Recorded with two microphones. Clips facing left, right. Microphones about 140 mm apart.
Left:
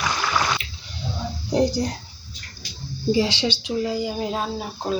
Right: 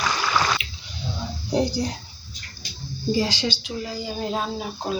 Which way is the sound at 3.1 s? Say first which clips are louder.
Left 2 dB; 25° left (ahead or behind).